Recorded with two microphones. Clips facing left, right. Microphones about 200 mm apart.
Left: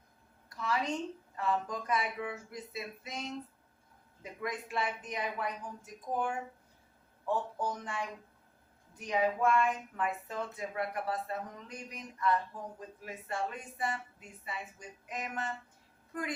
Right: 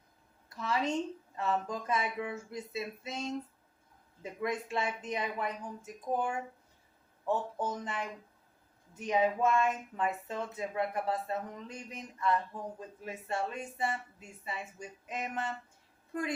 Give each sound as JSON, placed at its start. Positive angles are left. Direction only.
{"t": 0.5, "sound": "a woman's voice", "side_deg": -25}